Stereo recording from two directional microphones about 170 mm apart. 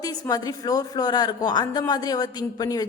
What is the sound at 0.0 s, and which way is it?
A woman's voice, 20° left (ahead or behind).